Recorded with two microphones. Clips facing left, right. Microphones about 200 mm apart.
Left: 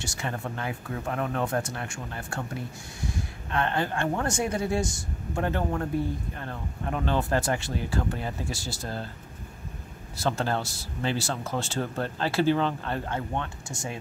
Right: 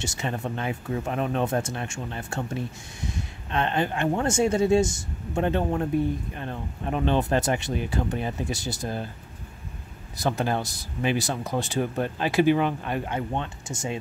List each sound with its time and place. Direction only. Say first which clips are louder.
0.0 s speech: right 3 dB; 20° right (ahead or behind)
10.1 s speech: right 2 dB; 15° right (ahead or behind)